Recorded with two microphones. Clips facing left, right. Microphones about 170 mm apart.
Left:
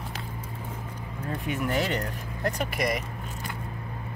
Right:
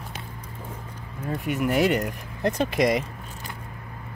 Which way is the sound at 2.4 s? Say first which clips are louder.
Right 6 dB; 20° right (ahead or behind).